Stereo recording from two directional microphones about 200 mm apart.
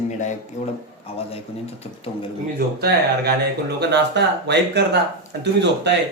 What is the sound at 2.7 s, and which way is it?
A man's voice, 55° right (ahead or behind).